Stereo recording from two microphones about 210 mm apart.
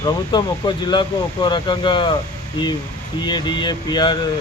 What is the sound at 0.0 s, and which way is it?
Speech, 20° left (ahead or behind).